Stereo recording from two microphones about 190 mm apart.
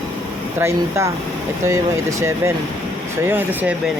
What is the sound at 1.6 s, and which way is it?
Speech, 15° right (ahead or behind).